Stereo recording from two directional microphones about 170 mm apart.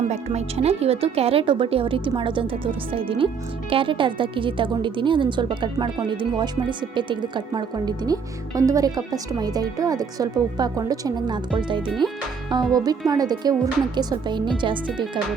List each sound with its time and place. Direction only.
0.1 s a woman's voice: 40° right (ahead or behind)